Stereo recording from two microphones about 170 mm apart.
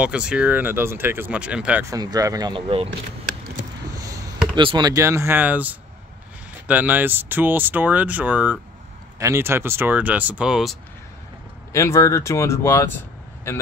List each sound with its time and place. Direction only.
0.0 s speech: 5° right (ahead or behind); by 2.9 s 30° right (ahead or behind)
3.9 s speech: 20° right (ahead or behind); by 10.8 s centre (ahead or behind)
11.7 s speech: 15° left (ahead or behind)